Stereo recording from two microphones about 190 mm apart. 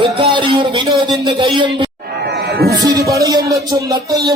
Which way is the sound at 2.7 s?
20° right (ahead or behind).